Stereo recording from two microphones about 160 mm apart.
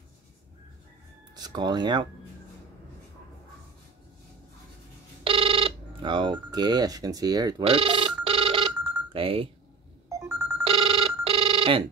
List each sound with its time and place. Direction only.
1.3 s speech: 25° right (ahead or behind)
5.2 s a sound: 35° right (ahead or behind)
7.6 s music: 35° right (ahead or behind)
9.1 s speech: 35° right (ahead or behind)
10.0 s telephone bell ringing: 15° right (ahead or behind)
10.6 s telephone bell ringing: 35° right (ahead or behind)